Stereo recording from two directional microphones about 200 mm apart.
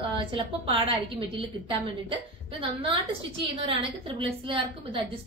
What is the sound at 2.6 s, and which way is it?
Speech, 25° right (ahead or behind).